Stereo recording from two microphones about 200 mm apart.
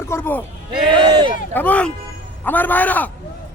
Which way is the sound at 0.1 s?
10° left (ahead or behind).